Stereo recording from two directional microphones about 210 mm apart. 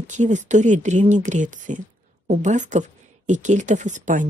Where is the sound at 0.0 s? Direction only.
35° right (ahead or behind).